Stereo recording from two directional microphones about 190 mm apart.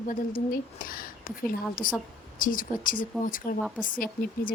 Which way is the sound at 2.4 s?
45° left (ahead or behind).